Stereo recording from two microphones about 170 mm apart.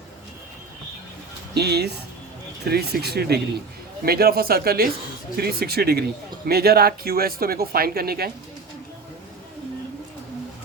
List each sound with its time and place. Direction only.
1.5 s speech: 75° right (ahead or behind)